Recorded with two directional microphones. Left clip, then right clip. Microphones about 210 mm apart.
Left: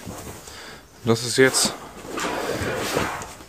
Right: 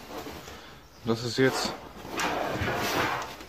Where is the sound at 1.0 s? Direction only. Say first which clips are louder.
Left 8 dB; 35° left (ahead or behind).